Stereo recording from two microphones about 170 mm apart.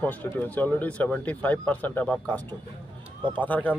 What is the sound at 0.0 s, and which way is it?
Speech, 10° left (ahead or behind).